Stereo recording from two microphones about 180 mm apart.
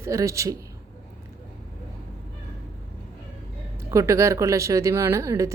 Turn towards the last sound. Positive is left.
turn(degrees=-15)  # may be behind; listen again after turning